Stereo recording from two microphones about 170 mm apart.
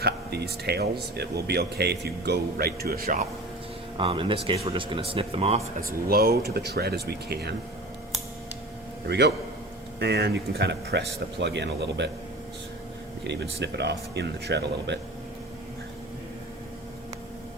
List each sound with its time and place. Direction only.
0.0 s speech: 70° right (ahead or behind)
3.9 s speech: 30° right (ahead or behind)
6.1 s speech: 65° right (ahead or behind)
9.0 s speech: 80° right
13.2 s speech: 90° right